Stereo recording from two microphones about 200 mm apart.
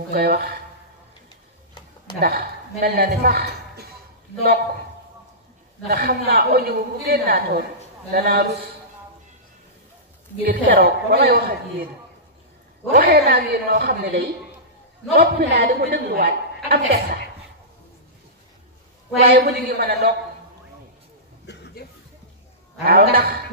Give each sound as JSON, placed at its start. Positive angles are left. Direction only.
{"t": 0.1, "sound": "a woman's voice", "side_deg": -50}
{"t": 2.1, "sound": "a man's voice", "side_deg": -50}
{"t": 5.9, "sound": "a woman's voice", "side_deg": -50}
{"t": 10.4, "sound": "a woman's voice", "side_deg": -45}
{"t": 12.9, "sound": "a woman's voice", "side_deg": -50}
{"t": 19.1, "sound": "a woman's voice", "side_deg": -45}
{"t": 21.5, "sound": "a sound", "side_deg": 60}
{"t": 22.8, "sound": "a woman's voice", "side_deg": -45}